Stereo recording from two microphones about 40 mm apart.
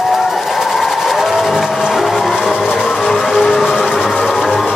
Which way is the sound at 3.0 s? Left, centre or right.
Centre.